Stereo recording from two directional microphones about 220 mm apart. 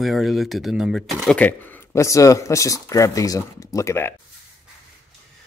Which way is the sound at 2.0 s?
15° left (ahead or behind).